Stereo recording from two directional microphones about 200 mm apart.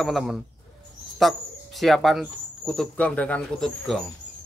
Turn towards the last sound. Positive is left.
turn(degrees=0)  # may be behind; listen again after turning